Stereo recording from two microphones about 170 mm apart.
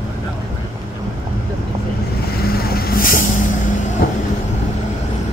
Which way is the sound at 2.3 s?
65° left (ahead or behind).